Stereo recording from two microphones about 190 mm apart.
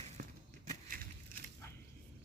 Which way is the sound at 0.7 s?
45° right (ahead or behind).